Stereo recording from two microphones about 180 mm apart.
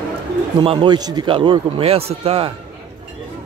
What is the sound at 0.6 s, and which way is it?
A man's voice, 25° right (ahead or behind).